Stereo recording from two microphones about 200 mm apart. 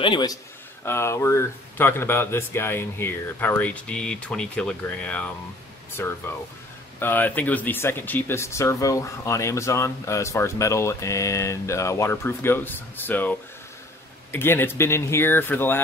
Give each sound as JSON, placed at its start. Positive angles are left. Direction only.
{"t": 0.0, "sound": "a man's voice", "side_deg": 20}